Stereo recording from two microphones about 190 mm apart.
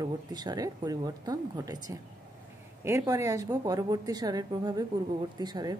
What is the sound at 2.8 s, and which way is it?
A woman's voice, 15° right (ahead or behind).